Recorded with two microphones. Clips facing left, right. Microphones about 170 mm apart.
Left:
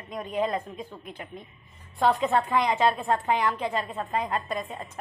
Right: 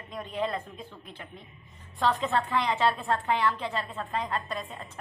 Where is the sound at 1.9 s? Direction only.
15° left (ahead or behind).